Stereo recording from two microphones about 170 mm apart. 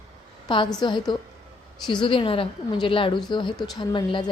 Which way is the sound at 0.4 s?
30° left (ahead or behind).